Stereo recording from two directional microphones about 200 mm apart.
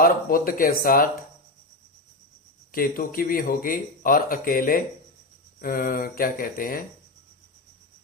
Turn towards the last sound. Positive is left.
turn(degrees=45)  # may be behind; listen again after turning